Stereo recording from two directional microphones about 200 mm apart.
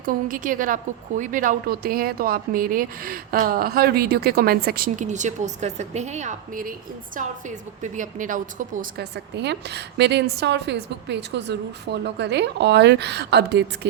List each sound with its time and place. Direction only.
0.0 s a woman's voice: 45° right (ahead or behind)
7.8 s a woman's voice: 40° right (ahead or behind); by 13.7 s 55° right (ahead or behind)